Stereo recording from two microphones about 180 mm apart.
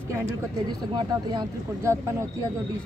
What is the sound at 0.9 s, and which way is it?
Speech, 20° right (ahead or behind).